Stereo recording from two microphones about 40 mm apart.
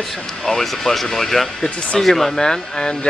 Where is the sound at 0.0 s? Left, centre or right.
Centre.